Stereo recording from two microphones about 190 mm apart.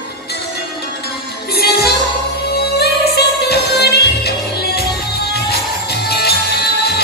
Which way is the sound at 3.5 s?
55° left (ahead or behind).